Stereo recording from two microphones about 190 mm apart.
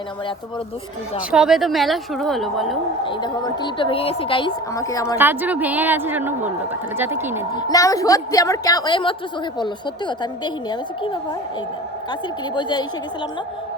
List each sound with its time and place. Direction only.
1.3 s a woman's voice: 5° right (ahead or behind)
3.0 s a woman's voice: 25° left (ahead or behind)
5.1 s a woman's voice: 10° right (ahead or behind)
7.5 s a woman's voice: 20° left (ahead or behind)
12.5 s a woman's voice: 25° left (ahead or behind)